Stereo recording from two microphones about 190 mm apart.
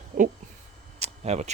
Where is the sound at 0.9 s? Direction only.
35° right (ahead or behind).